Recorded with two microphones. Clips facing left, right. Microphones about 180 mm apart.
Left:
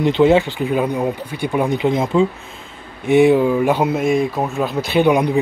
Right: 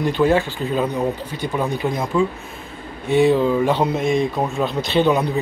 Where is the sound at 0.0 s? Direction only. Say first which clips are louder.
Left 4 dB; 20° left (ahead or behind).